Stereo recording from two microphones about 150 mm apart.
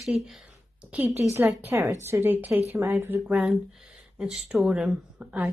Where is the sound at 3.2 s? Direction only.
Centre (ahead or behind).